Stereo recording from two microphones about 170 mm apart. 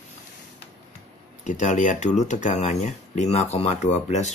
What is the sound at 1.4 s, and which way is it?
Speech, 45° left (ahead or behind).